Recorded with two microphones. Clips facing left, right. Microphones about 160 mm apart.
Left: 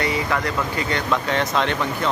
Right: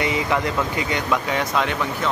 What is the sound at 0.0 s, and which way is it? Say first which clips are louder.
Speech: right 1 dB; 20° right (ahead or behind).